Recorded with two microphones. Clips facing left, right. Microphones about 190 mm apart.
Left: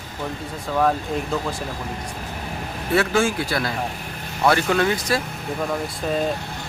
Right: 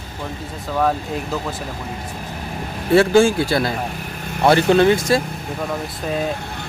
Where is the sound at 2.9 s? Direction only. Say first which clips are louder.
Right 7 dB; 30° right (ahead or behind).